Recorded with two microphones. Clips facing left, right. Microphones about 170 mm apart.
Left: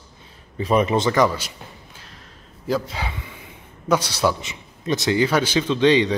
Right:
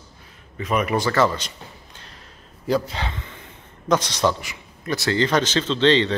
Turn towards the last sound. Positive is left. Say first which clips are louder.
# left 1 dB
turn(degrees=10)  # may be behind; listen again after turning